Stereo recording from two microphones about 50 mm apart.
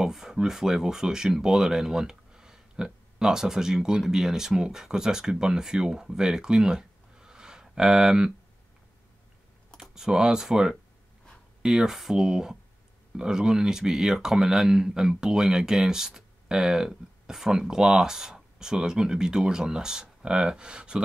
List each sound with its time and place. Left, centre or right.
0.0 s speech: centre
9.8 s speech: centre